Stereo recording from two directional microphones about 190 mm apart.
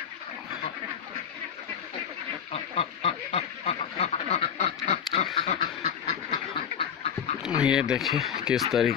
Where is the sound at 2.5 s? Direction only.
30° left (ahead or behind).